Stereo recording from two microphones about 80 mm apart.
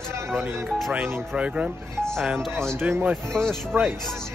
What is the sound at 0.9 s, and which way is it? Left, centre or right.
Music, centre.